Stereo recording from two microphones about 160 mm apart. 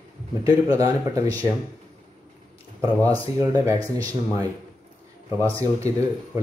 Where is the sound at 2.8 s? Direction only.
20° right (ahead or behind).